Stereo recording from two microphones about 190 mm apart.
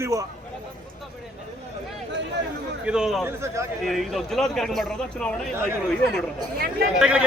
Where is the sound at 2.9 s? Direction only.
5° right (ahead or behind).